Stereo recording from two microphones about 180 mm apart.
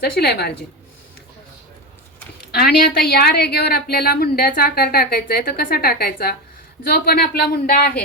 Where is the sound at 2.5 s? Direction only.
60° left (ahead or behind).